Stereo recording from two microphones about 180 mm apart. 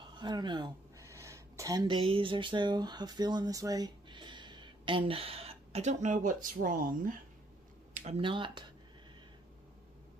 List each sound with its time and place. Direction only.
0.0 s speech: 25° right (ahead or behind); by 7.2 s 50° right (ahead or behind)
7.9 s speech: 35° right (ahead or behind)